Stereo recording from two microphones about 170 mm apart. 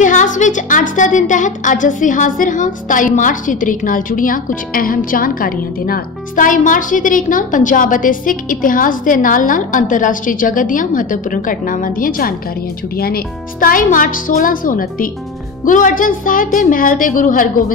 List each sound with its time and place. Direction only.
0.0 s a woman's voice: 50° left (ahead or behind)